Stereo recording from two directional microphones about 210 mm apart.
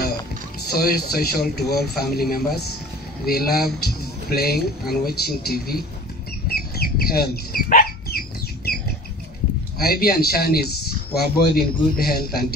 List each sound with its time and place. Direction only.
0.7 s speech: 50° left (ahead or behind)
6.4 s a sound: 45° left (ahead or behind)
9.8 s speech: 45° left (ahead or behind)